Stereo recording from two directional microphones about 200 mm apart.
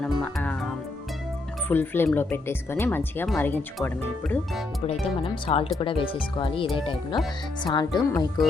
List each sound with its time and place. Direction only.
0.0 s music: 5° left (ahead or behind)
1.6 s speech: 10° left (ahead or behind)
4.9 s speech: 30° left (ahead or behind)